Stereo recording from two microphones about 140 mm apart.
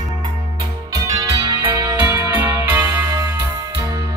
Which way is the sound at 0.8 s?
25° right (ahead or behind).